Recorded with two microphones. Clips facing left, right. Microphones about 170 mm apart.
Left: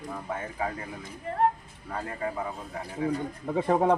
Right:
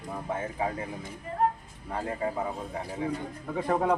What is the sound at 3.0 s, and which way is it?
Speech, 25° right (ahead or behind).